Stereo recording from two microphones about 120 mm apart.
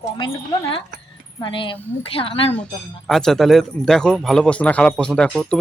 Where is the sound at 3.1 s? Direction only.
5° left (ahead or behind).